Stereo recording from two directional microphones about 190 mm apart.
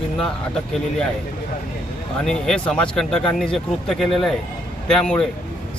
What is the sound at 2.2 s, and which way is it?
Speech, 5° left (ahead or behind).